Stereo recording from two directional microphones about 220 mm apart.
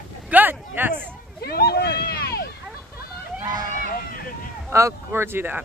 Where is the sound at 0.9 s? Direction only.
45° left (ahead or behind).